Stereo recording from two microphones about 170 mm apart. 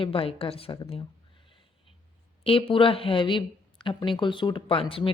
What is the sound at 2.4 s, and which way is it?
Speech, 35° left (ahead or behind).